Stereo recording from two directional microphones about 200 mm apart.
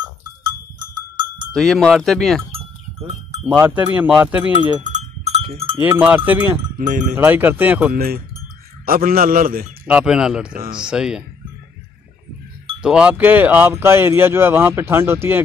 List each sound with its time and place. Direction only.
1.5 s speech: centre (ahead or behind)
3.4 s speech: 10° right (ahead or behind)
4.8 s cowbell: 35° right (ahead or behind)
5.8 s speech: 10° right (ahead or behind)
6.8 s speech: 40° right (ahead or behind)
7.2 s speech: 10° right (ahead or behind)
7.9 s a man's voice: 50° right (ahead or behind)
9.8 s speech: 5° right (ahead or behind)
12.8 s speech: 5° right (ahead or behind)